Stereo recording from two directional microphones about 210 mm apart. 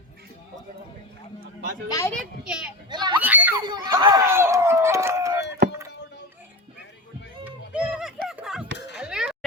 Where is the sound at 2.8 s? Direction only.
20° right (ahead or behind).